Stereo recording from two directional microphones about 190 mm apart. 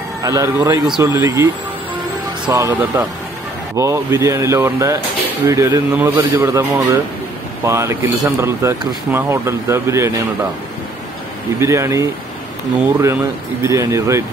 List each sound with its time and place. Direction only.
0.2 s speech: 15° right (ahead or behind)
2.5 s speech: 15° right (ahead or behind)
11.6 s speech: 15° right (ahead or behind)